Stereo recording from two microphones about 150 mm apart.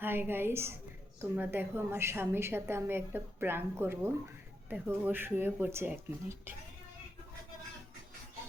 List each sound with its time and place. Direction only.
0.0 s a woman's voice: 15° right (ahead or behind)